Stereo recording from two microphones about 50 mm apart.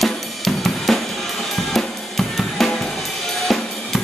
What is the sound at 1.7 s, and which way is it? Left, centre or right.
Drum kit, centre.